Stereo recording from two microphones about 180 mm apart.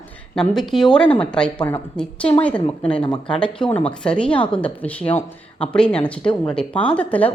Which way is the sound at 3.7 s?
30° left (ahead or behind).